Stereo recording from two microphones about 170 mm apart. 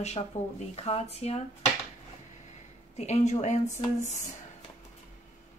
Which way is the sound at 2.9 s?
40° left (ahead or behind).